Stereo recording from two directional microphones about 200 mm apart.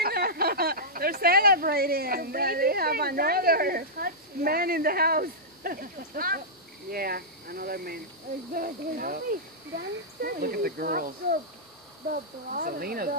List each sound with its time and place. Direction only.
0.0 s speech: 50° right (ahead or behind)